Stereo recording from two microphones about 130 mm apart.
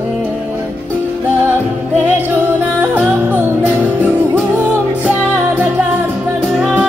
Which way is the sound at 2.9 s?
10° right (ahead or behind).